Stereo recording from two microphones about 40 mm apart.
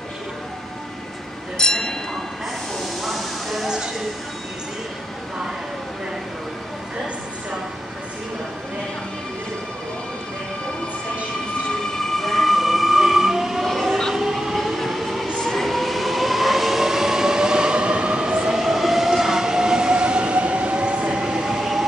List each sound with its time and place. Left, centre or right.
1.6 s music: centre
3.0 s a sound: centre
3.6 s speech: centre
11.8 s train: centre
15.3 s vehicle: centre; by 18.5 s right
18.5 s train: centre
21.5 s train: centre